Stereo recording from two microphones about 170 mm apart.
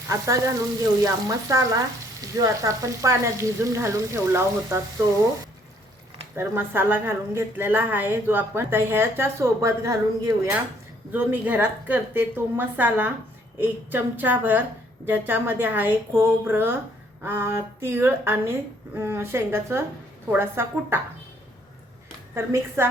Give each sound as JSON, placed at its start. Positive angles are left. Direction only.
{"t": 0.1, "sound": "a woman's voice", "side_deg": -20}
{"t": 1.0, "sound": "frying", "side_deg": -20}
{"t": 6.3, "sound": "a woman's voice", "side_deg": -10}
{"t": 22.4, "sound": "a woman's voice", "side_deg": -15}